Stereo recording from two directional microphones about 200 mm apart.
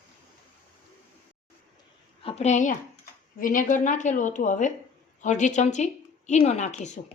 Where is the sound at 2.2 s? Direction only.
30° left (ahead or behind).